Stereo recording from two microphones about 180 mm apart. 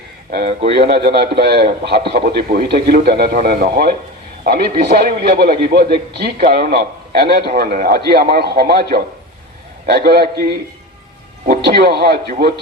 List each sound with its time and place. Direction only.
0.3 s speech: 50° right (ahead or behind)
0.7 s a man's voice: 65° right (ahead or behind)